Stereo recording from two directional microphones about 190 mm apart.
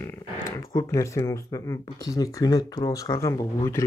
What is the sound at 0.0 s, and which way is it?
Speech, 15° left (ahead or behind).